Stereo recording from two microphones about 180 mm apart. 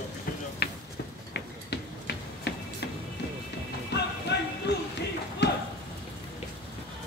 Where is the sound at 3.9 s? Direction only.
70° left (ahead or behind).